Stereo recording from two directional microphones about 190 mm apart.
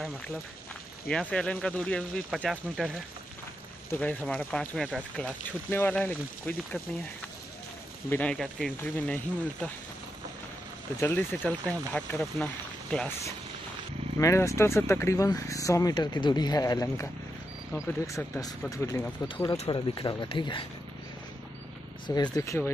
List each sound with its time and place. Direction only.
1.3 s speech: 5° left (ahead or behind)
3.9 s speech: 10° left (ahead or behind)
8.1 s speech: 5° left (ahead or behind)
11.0 s speech: 10° left (ahead or behind)
14.1 s speech: 15° left (ahead or behind)
22.0 s speech: 20° left (ahead or behind)